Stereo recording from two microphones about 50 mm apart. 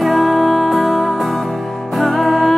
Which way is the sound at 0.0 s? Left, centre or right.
Centre.